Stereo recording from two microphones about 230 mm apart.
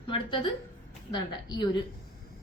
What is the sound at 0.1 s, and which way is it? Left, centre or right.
Speech, left.